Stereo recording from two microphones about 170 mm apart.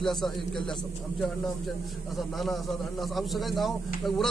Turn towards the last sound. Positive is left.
turn(degrees=0)  # may be behind; listen again after turning